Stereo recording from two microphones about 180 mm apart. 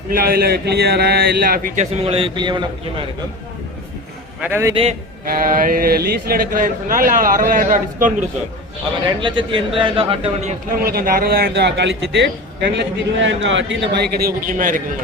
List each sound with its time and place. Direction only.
0.1 s a man's voice: 55° right (ahead or behind); by 2.6 s 25° right (ahead or behind)
4.4 s a man's voice: 10° right (ahead or behind)
4.7 s a man's voice: 30° right (ahead or behind)
5.2 s speech: 50° right (ahead or behind)
9.2 s a man's voice: 30° right (ahead or behind)
10.8 s a man's voice: 55° right (ahead or behind); by 12.8 s 75° right (ahead or behind)
13.2 s a man's voice: 90° right; by 14.8 s 50° right (ahead or behind)